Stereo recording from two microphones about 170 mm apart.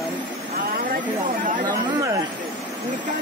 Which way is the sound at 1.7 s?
20° right (ahead or behind).